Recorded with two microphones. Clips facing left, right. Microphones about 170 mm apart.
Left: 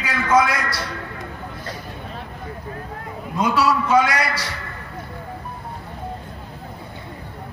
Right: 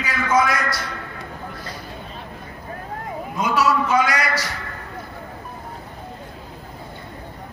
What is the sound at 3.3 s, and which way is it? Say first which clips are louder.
Speech: left 1 dB; 30° left (ahead or behind).